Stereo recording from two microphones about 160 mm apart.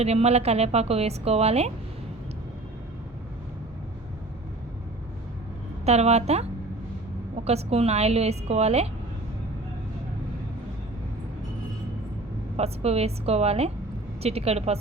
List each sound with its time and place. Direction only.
0.0 s a woman's voice: 40° right (ahead or behind)
5.8 s a woman's voice: 40° right (ahead or behind)
7.4 s a woman's voice: 40° right (ahead or behind)
12.5 s a woman's voice: 40° right (ahead or behind)